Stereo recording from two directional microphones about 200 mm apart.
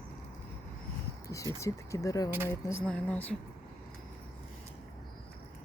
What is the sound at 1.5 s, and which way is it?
Speech, 15° left (ahead or behind).